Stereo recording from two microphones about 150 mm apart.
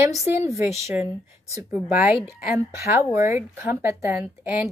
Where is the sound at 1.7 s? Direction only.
10° right (ahead or behind).